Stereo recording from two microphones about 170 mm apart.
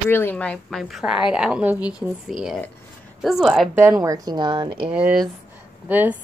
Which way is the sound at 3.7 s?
15° right (ahead or behind).